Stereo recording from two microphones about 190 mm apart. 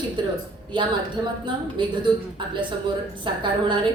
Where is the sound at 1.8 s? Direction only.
25° right (ahead or behind).